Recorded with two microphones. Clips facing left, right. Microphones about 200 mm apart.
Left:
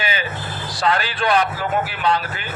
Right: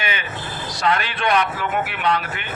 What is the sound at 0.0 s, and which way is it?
Vehicle, 30° left (ahead or behind).